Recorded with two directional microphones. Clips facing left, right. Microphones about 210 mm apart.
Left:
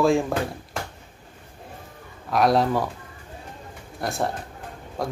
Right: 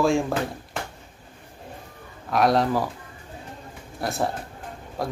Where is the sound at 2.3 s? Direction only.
Centre (ahead or behind).